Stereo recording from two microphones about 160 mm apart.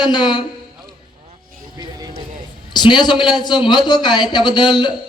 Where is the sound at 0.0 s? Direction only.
25° left (ahead or behind).